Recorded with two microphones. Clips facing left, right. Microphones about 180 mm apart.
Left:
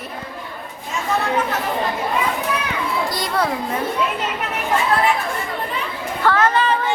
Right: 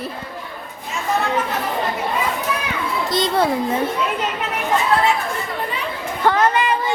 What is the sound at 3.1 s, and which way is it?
Speech, 20° right (ahead or behind).